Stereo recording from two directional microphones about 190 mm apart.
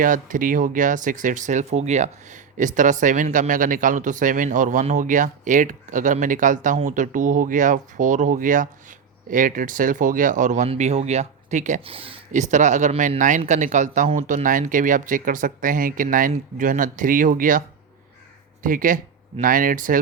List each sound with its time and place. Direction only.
0.0 s speech: 45° right (ahead or behind)
18.6 s speech: 45° right (ahead or behind)